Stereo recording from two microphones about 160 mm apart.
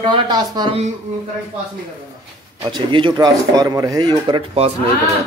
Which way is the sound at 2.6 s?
30° right (ahead or behind).